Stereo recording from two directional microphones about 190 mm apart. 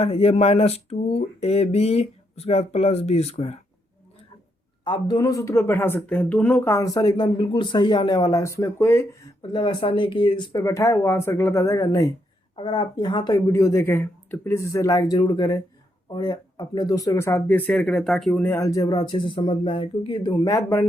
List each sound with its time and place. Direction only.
0.0 s a sound: 30° left (ahead or behind)
4.8 s speech: 20° left (ahead or behind)
9.4 s speech: 25° left (ahead or behind)